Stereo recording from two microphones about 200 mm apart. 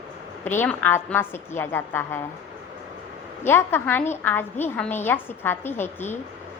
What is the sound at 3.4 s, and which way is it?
A woman's voice, 10° left (ahead or behind).